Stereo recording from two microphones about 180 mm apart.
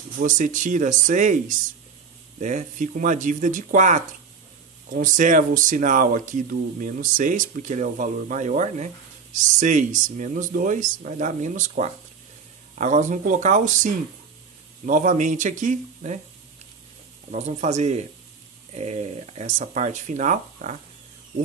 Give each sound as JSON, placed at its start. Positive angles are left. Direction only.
{"t": 0.2, "sound": "speech", "side_deg": -45}
{"t": 2.3, "sound": "speech", "side_deg": -40}
{"t": 17.3, "sound": "speech", "side_deg": -40}